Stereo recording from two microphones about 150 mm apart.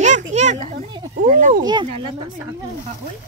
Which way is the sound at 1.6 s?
30° right (ahead or behind).